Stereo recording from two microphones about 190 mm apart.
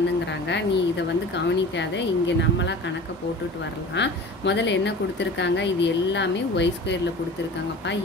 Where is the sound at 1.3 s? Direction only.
70° left (ahead or behind).